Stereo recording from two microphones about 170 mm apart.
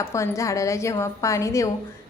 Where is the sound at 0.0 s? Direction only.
15° left (ahead or behind).